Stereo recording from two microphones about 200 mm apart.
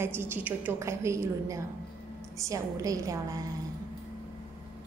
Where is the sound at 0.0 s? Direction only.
10° right (ahead or behind).